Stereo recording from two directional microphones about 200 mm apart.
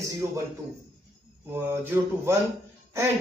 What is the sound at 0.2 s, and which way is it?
Speech, 15° right (ahead or behind).